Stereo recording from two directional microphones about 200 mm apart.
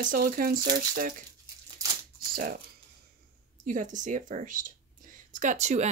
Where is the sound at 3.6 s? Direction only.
40° right (ahead or behind).